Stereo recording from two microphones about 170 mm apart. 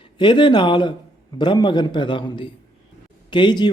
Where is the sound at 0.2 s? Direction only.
25° left (ahead or behind).